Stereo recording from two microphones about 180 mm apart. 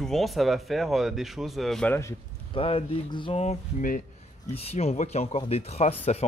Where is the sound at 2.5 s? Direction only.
30° left (ahead or behind).